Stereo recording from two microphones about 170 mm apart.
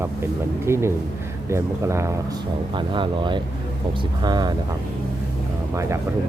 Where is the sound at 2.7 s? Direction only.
30° right (ahead or behind).